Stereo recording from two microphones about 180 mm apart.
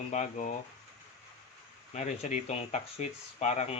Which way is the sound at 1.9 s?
40° left (ahead or behind).